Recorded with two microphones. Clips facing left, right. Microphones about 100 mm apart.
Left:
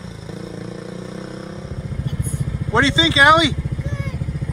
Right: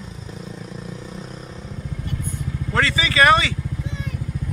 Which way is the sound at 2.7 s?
25° left (ahead or behind).